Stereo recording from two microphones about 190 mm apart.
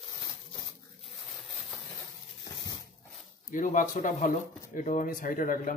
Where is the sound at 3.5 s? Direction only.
45° left (ahead or behind).